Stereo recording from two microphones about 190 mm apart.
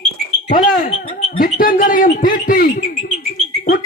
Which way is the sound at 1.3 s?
45° left (ahead or behind).